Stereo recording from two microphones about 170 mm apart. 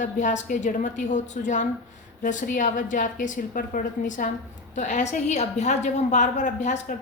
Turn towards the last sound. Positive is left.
turn(degrees=45)  # may be behind; listen again after turning